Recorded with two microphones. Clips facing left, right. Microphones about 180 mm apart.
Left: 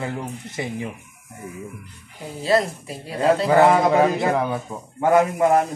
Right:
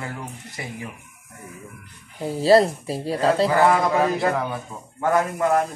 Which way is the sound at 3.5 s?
20° left (ahead or behind).